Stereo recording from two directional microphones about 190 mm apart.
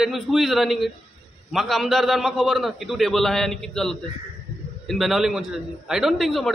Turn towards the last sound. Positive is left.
turn(degrees=0)  # may be behind; listen again after turning